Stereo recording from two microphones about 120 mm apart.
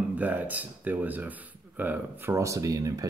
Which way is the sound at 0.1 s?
15° right (ahead or behind).